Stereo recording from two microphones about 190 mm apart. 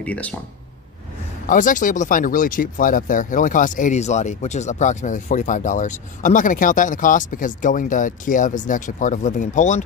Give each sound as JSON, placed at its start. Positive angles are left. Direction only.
{"t": 0.0, "sound": "speech", "side_deg": 5}
{"t": 1.5, "sound": "speech", "side_deg": 45}